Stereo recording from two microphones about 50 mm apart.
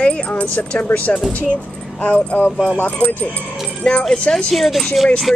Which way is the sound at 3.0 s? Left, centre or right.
Right.